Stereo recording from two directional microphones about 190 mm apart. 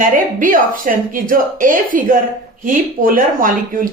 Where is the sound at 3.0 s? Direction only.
45° right (ahead or behind).